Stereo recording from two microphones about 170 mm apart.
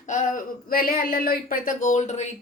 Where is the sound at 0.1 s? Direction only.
50° left (ahead or behind).